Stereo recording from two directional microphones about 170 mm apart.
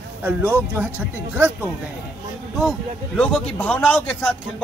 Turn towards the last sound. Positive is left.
turn(degrees=10)  # may be behind; listen again after turning